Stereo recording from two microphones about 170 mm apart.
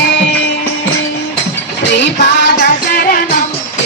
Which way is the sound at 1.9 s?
90° left.